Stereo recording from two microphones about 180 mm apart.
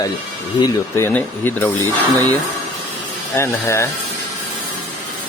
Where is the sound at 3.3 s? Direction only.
15° left (ahead or behind).